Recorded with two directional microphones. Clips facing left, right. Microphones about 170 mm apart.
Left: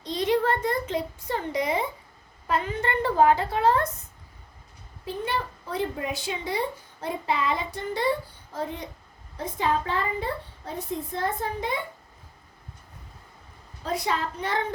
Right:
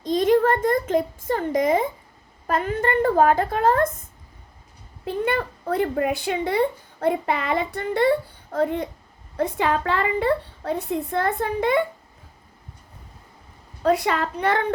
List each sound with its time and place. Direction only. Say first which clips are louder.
0.0 s a sound: right 6 dB; 45° right (ahead or behind)
2.5 s speech: right 4 dB; 50° right (ahead or behind)
5.0 s speech: right 6 dB; 55° right (ahead or behind)
9.4 s a woman's voice: right 4 dB; 70° right (ahead or behind)
13.8 s speech: right 7 dB; 65° right (ahead or behind)